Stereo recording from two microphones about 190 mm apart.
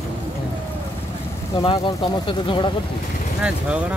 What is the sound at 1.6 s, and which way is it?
Speech, 25° left (ahead or behind).